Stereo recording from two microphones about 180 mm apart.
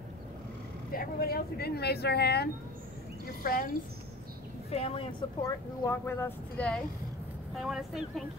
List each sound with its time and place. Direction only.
0.9 s speech: 55° left (ahead or behind)
4.6 s a woman's voice: 30° left (ahead or behind)
5.4 s speech: 15° left (ahead or behind)
7.5 s speech: centre (ahead or behind)